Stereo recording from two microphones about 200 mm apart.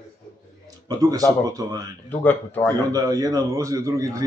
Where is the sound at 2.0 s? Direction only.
10° left (ahead or behind).